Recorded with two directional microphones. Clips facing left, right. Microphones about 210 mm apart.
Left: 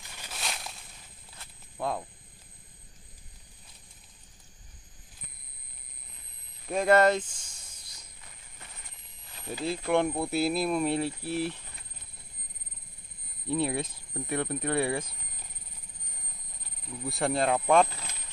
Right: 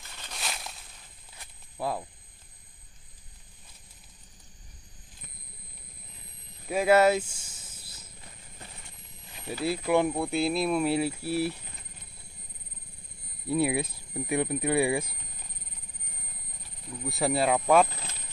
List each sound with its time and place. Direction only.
0.2 s a sound: centre (ahead or behind)
1.8 s speech: 5° right (ahead or behind)
6.7 s a sound: 5° right (ahead or behind)
9.7 s speech: 5° right (ahead or behind)
13.5 s speech: 10° right (ahead or behind)
17.0 s speech: centre (ahead or behind)